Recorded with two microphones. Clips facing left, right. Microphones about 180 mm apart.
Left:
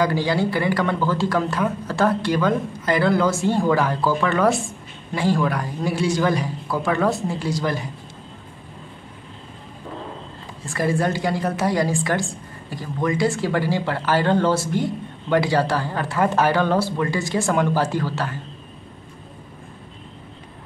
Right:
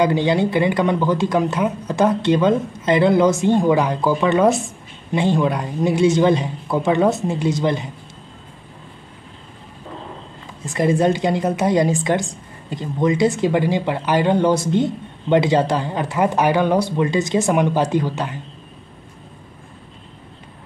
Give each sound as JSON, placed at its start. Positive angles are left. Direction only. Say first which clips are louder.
{"t": 0.0, "sound": "speech", "louder": "right 4 dB", "side_deg": -20}
{"t": 10.6, "sound": "speech", "louder": "right 5 dB", "side_deg": -20}